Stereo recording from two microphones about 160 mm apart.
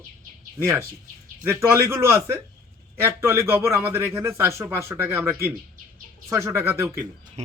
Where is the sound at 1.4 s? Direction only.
15° right (ahead or behind).